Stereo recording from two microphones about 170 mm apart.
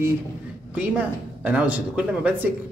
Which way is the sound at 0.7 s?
10° right (ahead or behind).